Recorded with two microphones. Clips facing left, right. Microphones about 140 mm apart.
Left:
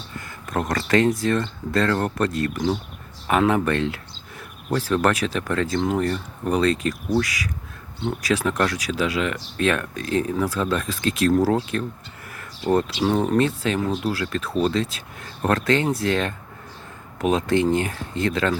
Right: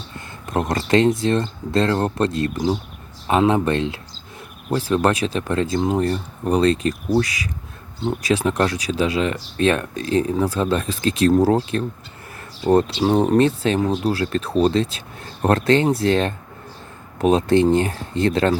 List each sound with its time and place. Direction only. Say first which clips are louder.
0.4 s speech: right 3 dB; 25° right (ahead or behind)